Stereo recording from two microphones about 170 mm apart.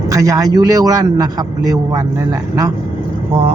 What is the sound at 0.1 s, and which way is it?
A man's voice, 20° right (ahead or behind).